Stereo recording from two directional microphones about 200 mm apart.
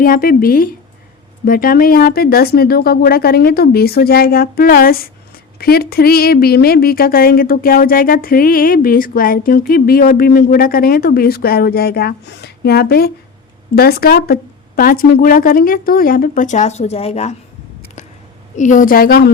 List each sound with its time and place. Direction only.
0.0 s a woman's voice: 45° left (ahead or behind)
18.5 s a woman's voice: 40° left (ahead or behind)